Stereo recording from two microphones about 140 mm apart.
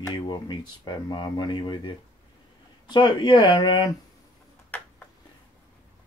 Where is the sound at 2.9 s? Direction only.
30° left (ahead or behind).